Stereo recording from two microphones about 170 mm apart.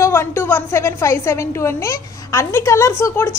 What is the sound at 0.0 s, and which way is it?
A woman's voice, 15° left (ahead or behind).